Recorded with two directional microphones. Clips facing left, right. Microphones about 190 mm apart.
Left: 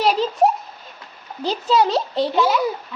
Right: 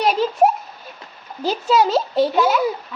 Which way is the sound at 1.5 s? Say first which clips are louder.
Right 1 dB; 5° right (ahead or behind).